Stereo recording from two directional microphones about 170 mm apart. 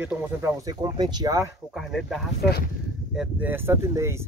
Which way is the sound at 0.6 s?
25° right (ahead or behind).